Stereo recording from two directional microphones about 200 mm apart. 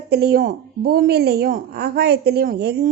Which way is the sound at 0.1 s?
50° right (ahead or behind).